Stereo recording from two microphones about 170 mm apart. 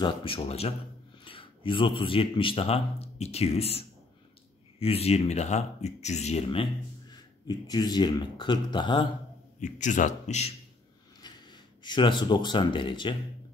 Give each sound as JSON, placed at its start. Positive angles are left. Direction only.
{"t": 0.0, "sound": "speech", "side_deg": 30}
{"t": 9.6, "sound": "a man's voice", "side_deg": 45}
{"t": 11.2, "sound": "speech", "side_deg": 25}